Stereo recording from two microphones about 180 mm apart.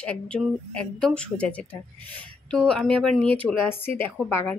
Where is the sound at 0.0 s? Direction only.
5° left (ahead or behind).